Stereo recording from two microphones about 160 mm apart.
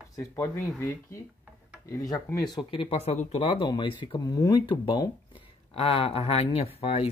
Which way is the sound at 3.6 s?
30° left (ahead or behind).